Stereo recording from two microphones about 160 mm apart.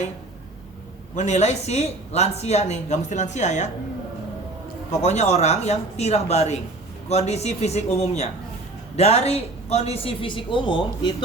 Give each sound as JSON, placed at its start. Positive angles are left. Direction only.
{"t": 1.1, "sound": "speech", "side_deg": 45}
{"t": 4.9, "sound": "a woman's voice", "side_deg": 45}